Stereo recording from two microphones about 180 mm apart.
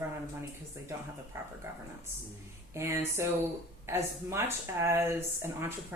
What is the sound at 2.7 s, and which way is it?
Speech, 15° right (ahead or behind).